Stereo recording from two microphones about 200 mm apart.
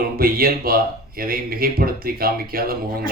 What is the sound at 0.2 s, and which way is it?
Speech, 50° right (ahead or behind).